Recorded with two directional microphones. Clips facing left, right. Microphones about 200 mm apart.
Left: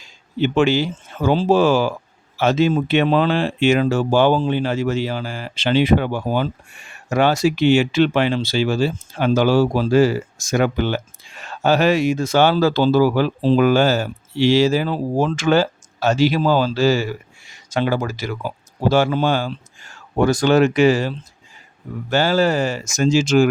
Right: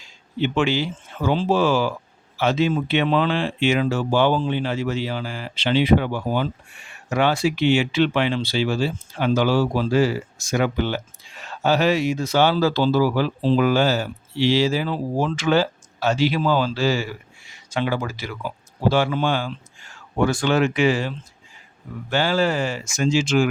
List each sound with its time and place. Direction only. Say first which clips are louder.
0.3 s speech: left 4 dB; 45° left (ahead or behind)